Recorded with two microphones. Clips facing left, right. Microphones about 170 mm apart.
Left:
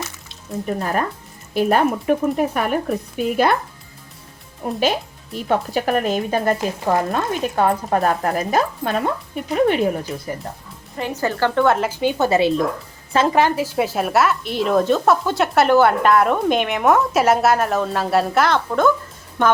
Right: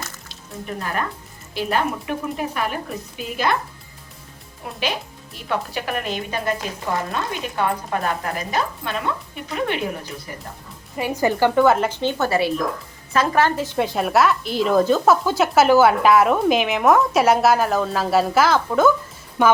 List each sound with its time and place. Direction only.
0.8 s speech: 40° left (ahead or behind)
4.6 s speech: 45° left (ahead or behind)
10.9 s speech: 10° right (ahead or behind)
11.6 s a woman's voice: centre (ahead or behind)
12.1 s a woman's voice: 20° left (ahead or behind); by 18.9 s centre (ahead or behind)